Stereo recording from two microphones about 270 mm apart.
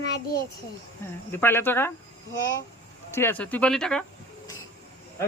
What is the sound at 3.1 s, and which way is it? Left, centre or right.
Speech, centre.